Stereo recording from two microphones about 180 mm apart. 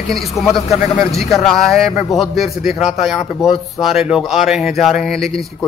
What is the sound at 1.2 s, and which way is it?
A man's voice, centre (ahead or behind).